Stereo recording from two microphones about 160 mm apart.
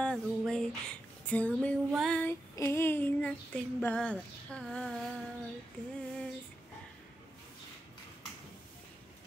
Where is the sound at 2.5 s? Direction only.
15° left (ahead or behind).